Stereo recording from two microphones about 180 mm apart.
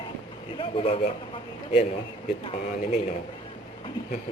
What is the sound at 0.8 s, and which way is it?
Speech, 35° left (ahead or behind).